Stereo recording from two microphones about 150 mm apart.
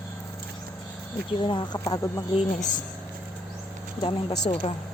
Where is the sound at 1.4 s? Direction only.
30° left (ahead or behind).